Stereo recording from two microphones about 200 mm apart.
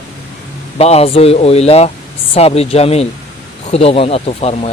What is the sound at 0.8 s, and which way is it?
Speech, 30° left (ahead or behind).